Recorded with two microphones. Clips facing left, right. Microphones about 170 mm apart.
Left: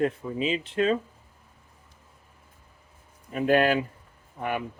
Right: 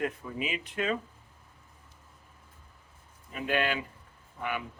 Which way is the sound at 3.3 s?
45° left (ahead or behind).